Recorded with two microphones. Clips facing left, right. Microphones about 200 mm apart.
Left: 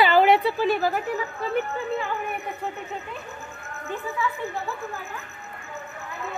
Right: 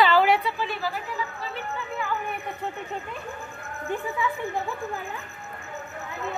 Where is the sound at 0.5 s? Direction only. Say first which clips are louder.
Left 7 dB; 40° left (ahead or behind).